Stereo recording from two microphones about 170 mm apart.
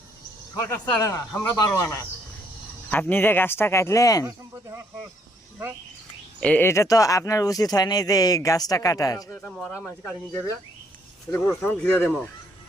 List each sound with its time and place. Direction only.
0.5 s speech: 20° left (ahead or behind)
6.4 s speech: 10° left (ahead or behind)
9.4 s speech: 5° left (ahead or behind)